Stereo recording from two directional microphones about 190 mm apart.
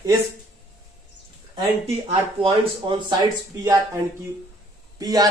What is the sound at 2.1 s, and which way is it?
Speech, 25° right (ahead or behind).